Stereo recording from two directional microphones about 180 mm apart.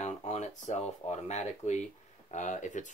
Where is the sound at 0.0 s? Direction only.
40° left (ahead or behind).